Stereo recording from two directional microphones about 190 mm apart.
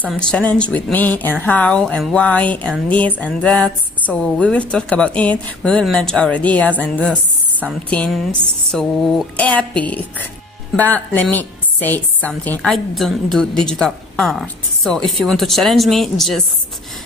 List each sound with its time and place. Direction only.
0.0 s a woman's voice: centre (ahead or behind)